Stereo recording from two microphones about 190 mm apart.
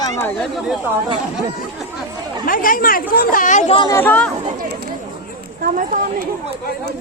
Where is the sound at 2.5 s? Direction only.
45° left (ahead or behind).